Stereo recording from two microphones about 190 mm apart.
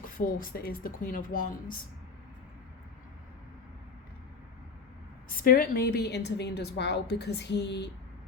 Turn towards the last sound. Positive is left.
turn(degrees=65)  # may be behind; listen again after turning